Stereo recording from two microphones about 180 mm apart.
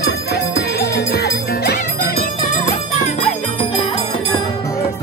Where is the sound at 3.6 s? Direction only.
25° left (ahead or behind).